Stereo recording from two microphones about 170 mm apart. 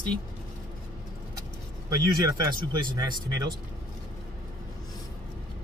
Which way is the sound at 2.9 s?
20° right (ahead or behind).